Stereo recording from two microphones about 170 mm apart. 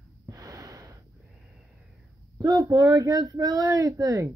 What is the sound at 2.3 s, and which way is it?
Speech, 25° right (ahead or behind).